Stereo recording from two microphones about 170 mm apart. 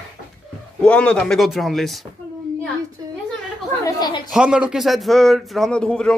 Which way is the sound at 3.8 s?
25° left (ahead or behind).